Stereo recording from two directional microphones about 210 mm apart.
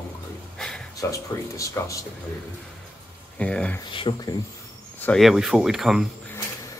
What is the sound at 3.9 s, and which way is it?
Speech, 25° left (ahead or behind).